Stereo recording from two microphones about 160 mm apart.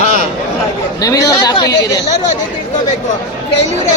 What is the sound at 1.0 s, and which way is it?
Speech, 20° left (ahead or behind).